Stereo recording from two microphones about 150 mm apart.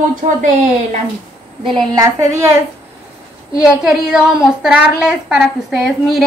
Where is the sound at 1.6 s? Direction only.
30° right (ahead or behind).